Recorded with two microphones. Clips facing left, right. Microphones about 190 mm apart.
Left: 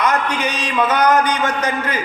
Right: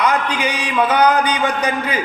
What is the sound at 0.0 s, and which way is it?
A man's voice, 10° right (ahead or behind).